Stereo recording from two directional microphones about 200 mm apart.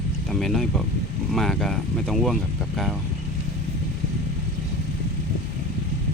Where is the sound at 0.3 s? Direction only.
5° left (ahead or behind).